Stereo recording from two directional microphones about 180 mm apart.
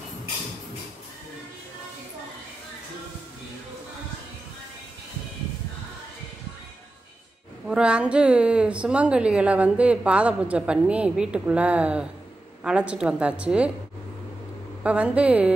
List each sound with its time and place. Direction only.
7.6 s a woman's voice: 5° right (ahead or behind)
14.8 s a woman's voice: 5° right (ahead or behind)